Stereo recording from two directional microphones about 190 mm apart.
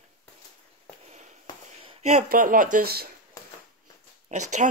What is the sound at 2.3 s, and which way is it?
Speech, 45° right (ahead or behind).